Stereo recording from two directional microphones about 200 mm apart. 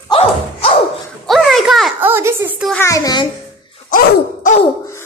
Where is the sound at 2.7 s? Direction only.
15° left (ahead or behind).